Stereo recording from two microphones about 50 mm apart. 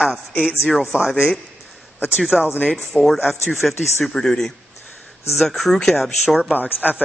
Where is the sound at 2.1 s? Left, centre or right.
Centre.